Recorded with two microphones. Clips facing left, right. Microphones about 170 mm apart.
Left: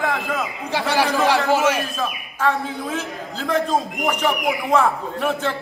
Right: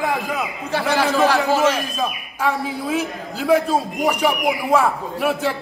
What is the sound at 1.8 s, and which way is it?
A man's voice, 15° right (ahead or behind).